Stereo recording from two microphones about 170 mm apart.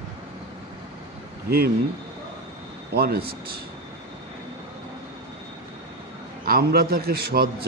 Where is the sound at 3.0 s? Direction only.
65° right (ahead or behind).